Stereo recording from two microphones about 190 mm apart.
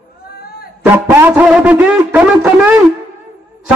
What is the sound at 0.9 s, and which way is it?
Music, 10° right (ahead or behind).